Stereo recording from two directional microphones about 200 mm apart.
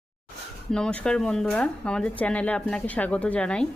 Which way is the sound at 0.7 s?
5° left (ahead or behind).